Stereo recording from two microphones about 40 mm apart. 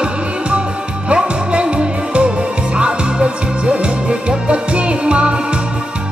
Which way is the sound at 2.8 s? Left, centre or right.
Right.